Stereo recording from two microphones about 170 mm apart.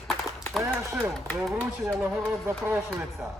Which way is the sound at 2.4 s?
10° right (ahead or behind).